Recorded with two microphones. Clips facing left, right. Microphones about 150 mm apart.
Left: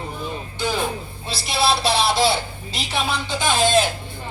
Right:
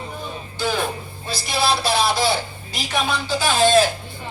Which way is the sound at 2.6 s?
25° left (ahead or behind).